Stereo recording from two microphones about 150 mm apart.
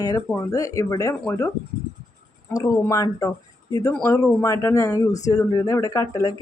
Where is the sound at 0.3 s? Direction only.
20° left (ahead or behind).